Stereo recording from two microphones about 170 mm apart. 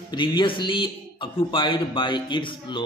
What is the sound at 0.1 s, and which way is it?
A man's voice, 25° left (ahead or behind).